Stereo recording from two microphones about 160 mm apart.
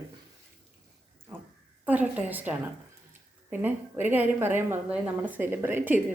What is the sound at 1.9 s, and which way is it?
A woman's voice, 10° right (ahead or behind).